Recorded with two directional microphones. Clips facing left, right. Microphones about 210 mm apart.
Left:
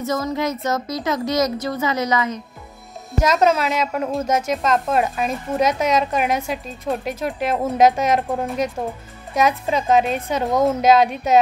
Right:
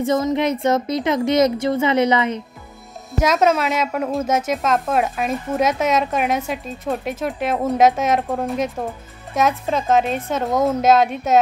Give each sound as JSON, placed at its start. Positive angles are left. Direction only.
{"t": 0.0, "sound": "a woman's voice", "side_deg": -25}
{"t": 3.2, "sound": "speech", "side_deg": -5}